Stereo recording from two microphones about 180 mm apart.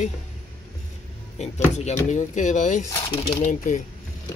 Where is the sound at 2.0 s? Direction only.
40° left (ahead or behind).